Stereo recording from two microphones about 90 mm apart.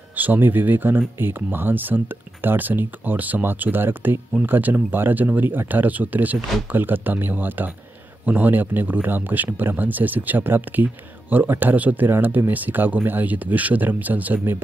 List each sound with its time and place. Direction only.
0.1 s speech: 20° right (ahead or behind)